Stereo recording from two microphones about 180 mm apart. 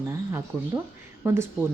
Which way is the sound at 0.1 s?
15° right (ahead or behind).